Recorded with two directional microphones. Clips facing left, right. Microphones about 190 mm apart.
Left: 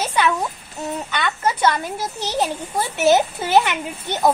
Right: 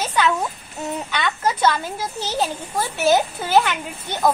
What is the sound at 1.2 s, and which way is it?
A woman's voice, 10° left (ahead or behind).